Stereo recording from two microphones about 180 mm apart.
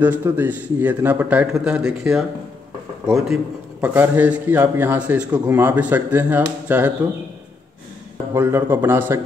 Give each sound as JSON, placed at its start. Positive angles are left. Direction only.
{"t": 0.0, "sound": "a man's voice", "side_deg": -10}
{"t": 8.3, "sound": "speech", "side_deg": -15}